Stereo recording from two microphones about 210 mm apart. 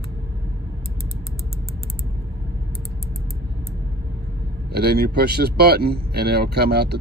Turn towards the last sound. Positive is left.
turn(degrees=-50)  # may be behind; listen again after turning